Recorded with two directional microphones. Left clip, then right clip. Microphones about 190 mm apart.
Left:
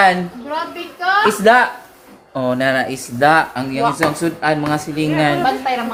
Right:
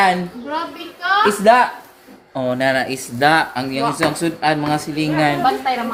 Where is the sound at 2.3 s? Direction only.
10° left (ahead or behind).